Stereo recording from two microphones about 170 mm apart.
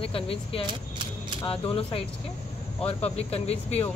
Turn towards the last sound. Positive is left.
turn(degrees=40)  # may be behind; listen again after turning